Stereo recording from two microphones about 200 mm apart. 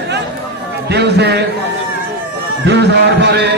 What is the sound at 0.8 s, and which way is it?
Speech, 55° right (ahead or behind).